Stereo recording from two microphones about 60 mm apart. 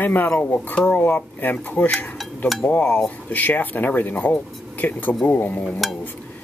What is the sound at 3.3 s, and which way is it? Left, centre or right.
Speech, left.